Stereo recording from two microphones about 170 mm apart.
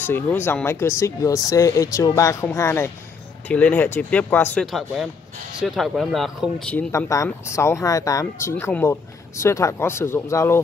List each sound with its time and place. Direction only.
0.0 s speech: 10° left (ahead or behind)